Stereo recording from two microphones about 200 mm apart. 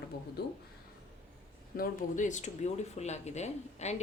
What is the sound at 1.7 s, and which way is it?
Speech, 40° left (ahead or behind).